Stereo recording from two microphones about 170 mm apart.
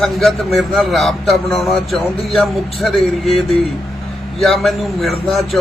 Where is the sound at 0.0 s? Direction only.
5° left (ahead or behind).